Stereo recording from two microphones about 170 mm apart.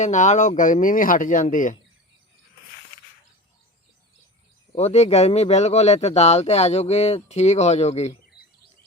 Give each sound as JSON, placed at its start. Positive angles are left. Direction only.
{"t": 0.0, "sound": "speech", "side_deg": 45}
{"t": 4.7, "sound": "speech", "side_deg": 40}